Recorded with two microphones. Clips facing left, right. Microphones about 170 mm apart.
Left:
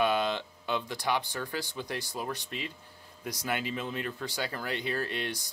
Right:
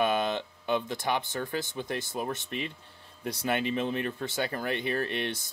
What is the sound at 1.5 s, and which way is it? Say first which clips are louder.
Speech: right 3 dB; 20° right (ahead or behind).